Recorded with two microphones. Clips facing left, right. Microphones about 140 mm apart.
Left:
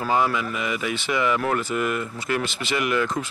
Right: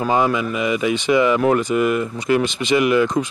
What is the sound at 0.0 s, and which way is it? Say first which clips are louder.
Speech: right 4 dB; 20° right (ahead or behind).